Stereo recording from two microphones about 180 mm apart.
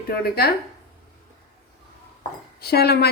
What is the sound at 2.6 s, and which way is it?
Speech, 60° left (ahead or behind).